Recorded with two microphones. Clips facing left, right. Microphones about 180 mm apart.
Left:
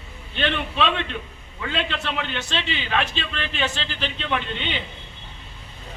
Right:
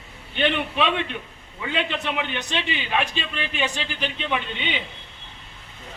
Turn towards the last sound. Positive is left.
turn(degrees=-10)  # may be behind; listen again after turning